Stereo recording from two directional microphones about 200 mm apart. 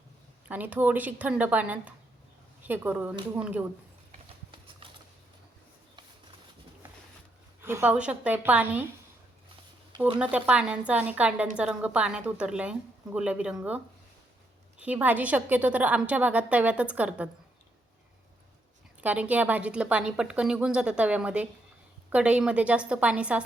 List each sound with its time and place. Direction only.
0.4 s a woman's voice: 10° right (ahead or behind)
4.8 s a sound: 25° right (ahead or behind)
7.6 s a woman's voice: 10° right (ahead or behind)
10.2 s a woman's voice: 5° right (ahead or behind)
19.0 s a woman's voice: 5° right (ahead or behind)